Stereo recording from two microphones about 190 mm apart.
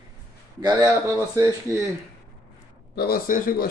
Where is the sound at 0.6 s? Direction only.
20° right (ahead or behind).